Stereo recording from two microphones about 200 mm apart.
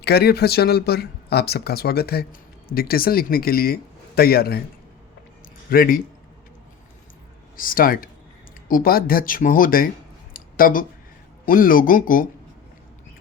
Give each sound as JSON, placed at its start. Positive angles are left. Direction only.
{"t": 0.0, "sound": "speech", "side_deg": 55}
{"t": 5.7, "sound": "speech", "side_deg": 45}
{"t": 7.5, "sound": "speech", "side_deg": 45}
{"t": 10.3, "sound": "a sound", "side_deg": 45}
{"t": 11.4, "sound": "speech", "side_deg": 45}